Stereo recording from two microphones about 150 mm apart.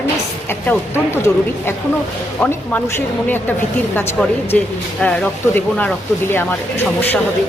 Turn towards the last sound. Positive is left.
turn(degrees=15)  # may be behind; listen again after turning